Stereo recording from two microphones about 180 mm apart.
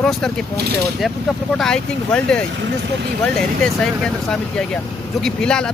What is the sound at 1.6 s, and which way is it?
Speech, 5° left (ahead or behind).